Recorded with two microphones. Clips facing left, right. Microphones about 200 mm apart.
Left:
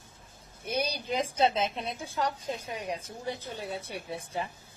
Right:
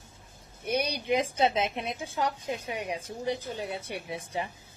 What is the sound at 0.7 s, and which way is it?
Speech, 65° right (ahead or behind).